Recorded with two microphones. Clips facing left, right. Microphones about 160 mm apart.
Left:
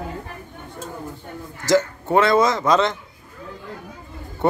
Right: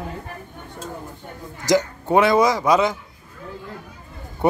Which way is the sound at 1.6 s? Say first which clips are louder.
Left 1 dB; 15° right (ahead or behind).